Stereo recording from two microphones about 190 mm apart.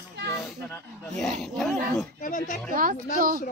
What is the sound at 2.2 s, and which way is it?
Speech, 40° left (ahead or behind).